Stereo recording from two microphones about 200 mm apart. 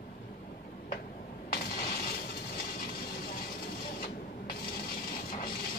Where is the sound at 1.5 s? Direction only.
50° left (ahead or behind).